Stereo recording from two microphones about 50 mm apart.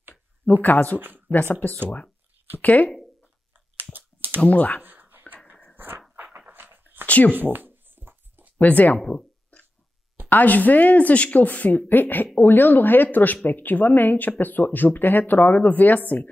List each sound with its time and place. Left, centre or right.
0.1 s a sound: left
0.9 s speech: right
1.3 s speech: left
4.5 s speech: left
4.8 s a sound: right
6.3 s dog: right
7.1 s speech: left
7.3 s writing: right
8.5 s speech: left
9.0 s a sound: centre
10.3 s speech: left